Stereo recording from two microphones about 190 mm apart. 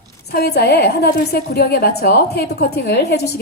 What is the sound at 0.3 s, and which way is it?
A woman's voice, 60° left (ahead or behind).